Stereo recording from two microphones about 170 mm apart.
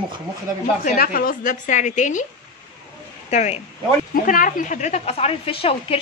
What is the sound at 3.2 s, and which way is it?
Speech, 40° left (ahead or behind).